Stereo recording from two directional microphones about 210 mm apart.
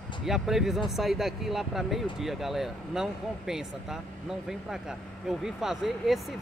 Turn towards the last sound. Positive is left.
turn(degrees=0)  # may be behind; listen again after turning